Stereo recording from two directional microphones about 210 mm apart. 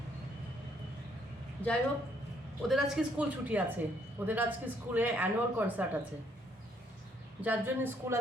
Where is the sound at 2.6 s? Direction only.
Centre (ahead or behind).